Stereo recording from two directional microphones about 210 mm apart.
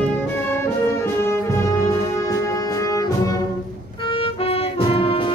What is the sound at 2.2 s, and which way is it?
Music, 15° left (ahead or behind).